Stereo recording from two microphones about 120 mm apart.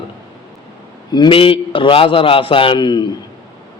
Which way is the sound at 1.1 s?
45° left (ahead or behind).